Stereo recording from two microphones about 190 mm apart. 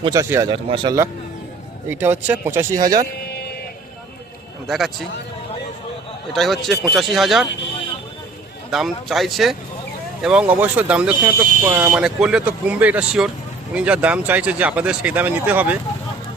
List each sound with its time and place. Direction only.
0.0 s speech: 20° right (ahead or behind)
0.5 s speech: 25° right (ahead or behind)
1.9 s speech: 10° right (ahead or behind)
4.7 s speech: centre (ahead or behind)
6.3 s speech: centre (ahead or behind)
8.7 s speech: centre (ahead or behind)